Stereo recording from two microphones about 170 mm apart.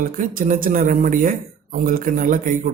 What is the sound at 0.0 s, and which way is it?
A man's voice, 55° right (ahead or behind).